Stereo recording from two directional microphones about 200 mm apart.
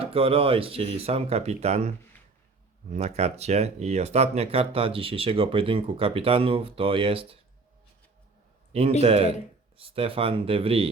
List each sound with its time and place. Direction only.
0.0 s speech: 30° right (ahead or behind)
2.9 s speech: 30° right (ahead or behind)
9.0 s speech: 30° right (ahead or behind)